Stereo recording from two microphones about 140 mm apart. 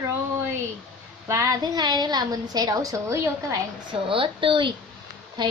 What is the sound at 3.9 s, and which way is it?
Speech, 40° right (ahead or behind).